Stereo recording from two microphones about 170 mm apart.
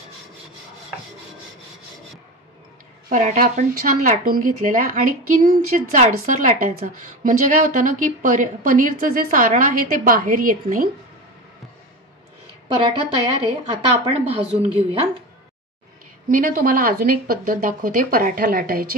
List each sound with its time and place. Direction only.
3.1 s a woman's voice: 45° right (ahead or behind)
12.6 s a woman's voice: 30° right (ahead or behind)
16.3 s speech: 55° right (ahead or behind)